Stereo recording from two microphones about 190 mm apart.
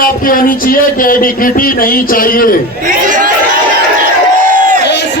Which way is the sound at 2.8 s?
45° right (ahead or behind).